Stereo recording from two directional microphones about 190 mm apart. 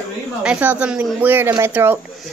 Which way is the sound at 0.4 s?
5° right (ahead or behind).